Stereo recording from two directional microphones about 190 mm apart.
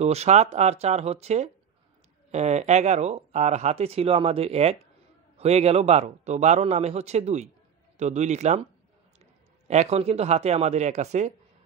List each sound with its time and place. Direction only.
0.0 s speech: 35° right (ahead or behind)
9.7 s speech: 35° right (ahead or behind)